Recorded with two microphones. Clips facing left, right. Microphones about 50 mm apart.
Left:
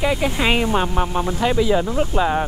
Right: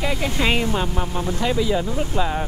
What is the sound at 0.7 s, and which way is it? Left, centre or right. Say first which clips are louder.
Speech: left 4 dB; left.